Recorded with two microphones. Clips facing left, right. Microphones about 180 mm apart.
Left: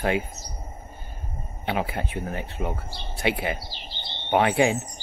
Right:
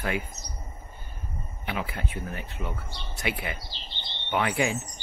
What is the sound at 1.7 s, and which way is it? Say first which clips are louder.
Speech: left 5 dB; 25° left (ahead or behind).